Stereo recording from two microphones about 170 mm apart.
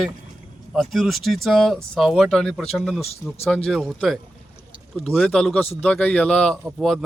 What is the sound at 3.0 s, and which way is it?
Speech, 35° left (ahead or behind).